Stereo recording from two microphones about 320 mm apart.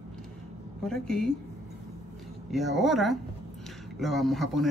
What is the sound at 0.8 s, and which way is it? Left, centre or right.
Speech, centre.